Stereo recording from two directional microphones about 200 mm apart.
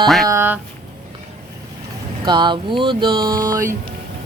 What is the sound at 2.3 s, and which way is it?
Speech, 25° right (ahead or behind).